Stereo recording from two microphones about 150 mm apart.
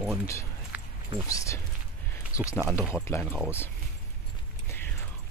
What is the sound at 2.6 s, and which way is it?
Speech, 10° left (ahead or behind).